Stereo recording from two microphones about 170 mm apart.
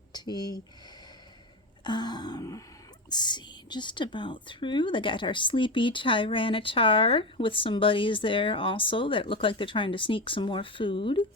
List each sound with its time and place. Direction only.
0.1 s speech: 25° left (ahead or behind)
1.8 s a sound: 25° left (ahead or behind)
3.1 s speech: 25° left (ahead or behind)